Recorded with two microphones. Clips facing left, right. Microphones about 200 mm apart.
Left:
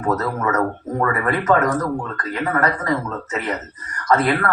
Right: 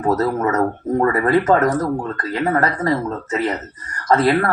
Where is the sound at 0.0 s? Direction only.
30° right (ahead or behind).